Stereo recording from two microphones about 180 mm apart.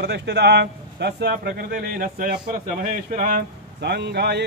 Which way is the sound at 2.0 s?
50° right (ahead or behind).